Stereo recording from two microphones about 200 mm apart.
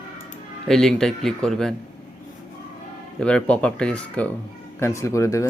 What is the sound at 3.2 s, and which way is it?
Speech, 5° left (ahead or behind).